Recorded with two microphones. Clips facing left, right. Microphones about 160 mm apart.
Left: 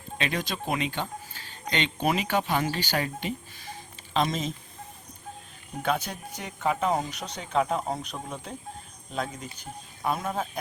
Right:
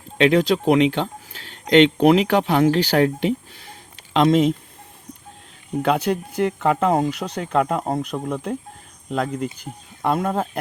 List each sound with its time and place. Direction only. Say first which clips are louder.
0.2 s speech: right 15 dB; 75° right (ahead or behind)
5.8 s speech: right 8 dB; 80° right